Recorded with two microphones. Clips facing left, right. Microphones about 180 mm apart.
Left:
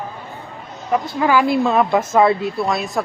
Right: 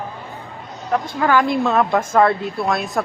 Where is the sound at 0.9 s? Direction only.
10° left (ahead or behind).